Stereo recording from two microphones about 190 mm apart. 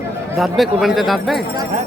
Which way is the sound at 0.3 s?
Centre (ahead or behind).